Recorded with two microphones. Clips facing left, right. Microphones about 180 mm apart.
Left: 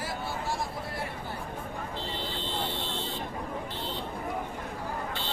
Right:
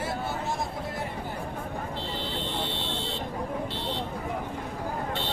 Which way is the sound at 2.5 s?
65° right (ahead or behind).